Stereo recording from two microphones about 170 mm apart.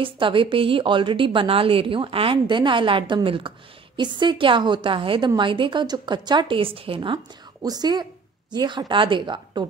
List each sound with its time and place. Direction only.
0.0 s a woman's voice: 30° right (ahead or behind)